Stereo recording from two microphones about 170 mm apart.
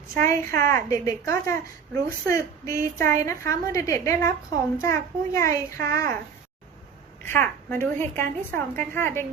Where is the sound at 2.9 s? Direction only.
55° right (ahead or behind).